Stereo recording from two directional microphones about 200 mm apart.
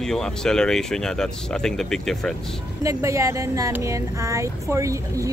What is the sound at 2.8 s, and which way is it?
Speech, 15° right (ahead or behind).